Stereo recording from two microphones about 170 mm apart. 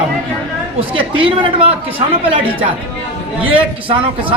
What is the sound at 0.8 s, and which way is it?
Speech, 30° right (ahead or behind).